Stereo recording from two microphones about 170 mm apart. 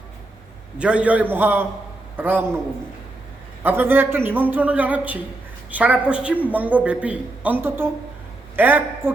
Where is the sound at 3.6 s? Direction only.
10° right (ahead or behind).